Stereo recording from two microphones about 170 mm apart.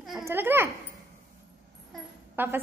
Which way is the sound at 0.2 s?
10° right (ahead or behind).